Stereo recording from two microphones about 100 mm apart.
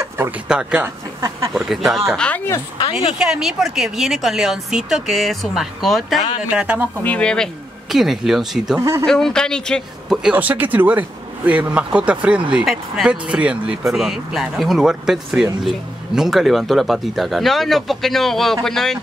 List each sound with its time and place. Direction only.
0.5 s speech: 10° right (ahead or behind)
0.8 s speech: 30° right (ahead or behind)
1.5 s a woman's voice: centre (ahead or behind)
2.0 s speech: 10° left (ahead or behind)
3.2 s a woman's voice: 5° right (ahead or behind)
6.5 s speech: 10° right (ahead or behind)
7.0 s speech: 10° left (ahead or behind)
7.9 s a woman's voice: centre (ahead or behind)
9.0 s speech: 5° left (ahead or behind)
10.3 s a woman's voice: 15° right (ahead or behind); by 18.9 s 5° left (ahead or behind)